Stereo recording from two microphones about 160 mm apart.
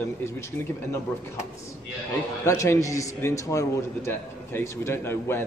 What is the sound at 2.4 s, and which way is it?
A man's voice, 20° left (ahead or behind).